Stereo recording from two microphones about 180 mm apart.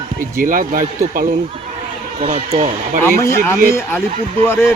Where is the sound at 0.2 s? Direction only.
50° right (ahead or behind).